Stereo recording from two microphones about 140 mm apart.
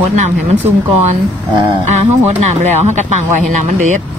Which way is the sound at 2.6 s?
55° right (ahead or behind).